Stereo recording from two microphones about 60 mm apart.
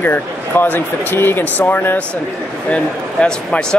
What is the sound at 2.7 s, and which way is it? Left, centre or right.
Speech, centre.